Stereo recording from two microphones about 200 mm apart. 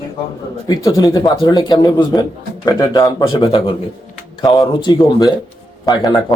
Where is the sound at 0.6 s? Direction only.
20° left (ahead or behind).